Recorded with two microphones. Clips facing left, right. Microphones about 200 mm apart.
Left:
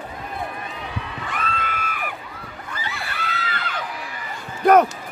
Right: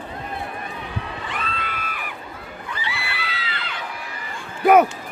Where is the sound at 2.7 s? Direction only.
45° left (ahead or behind).